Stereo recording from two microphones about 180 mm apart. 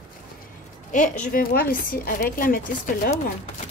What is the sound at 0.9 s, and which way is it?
Speech, 45° left (ahead or behind).